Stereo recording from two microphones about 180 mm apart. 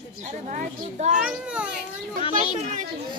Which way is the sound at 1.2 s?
5° right (ahead or behind).